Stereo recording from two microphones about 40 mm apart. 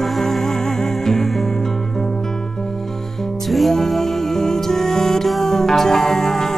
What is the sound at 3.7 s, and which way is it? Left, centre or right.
Music, centre.